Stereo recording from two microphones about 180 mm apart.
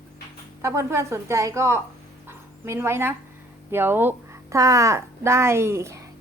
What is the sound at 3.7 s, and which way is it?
A woman's voice, 10° right (ahead or behind).